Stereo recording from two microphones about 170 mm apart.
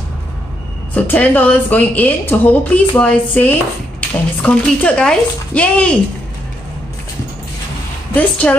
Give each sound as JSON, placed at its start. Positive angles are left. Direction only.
{"t": 0.9, "sound": "a woman's voice", "side_deg": 10}
{"t": 8.1, "sound": "a woman's voice", "side_deg": 10}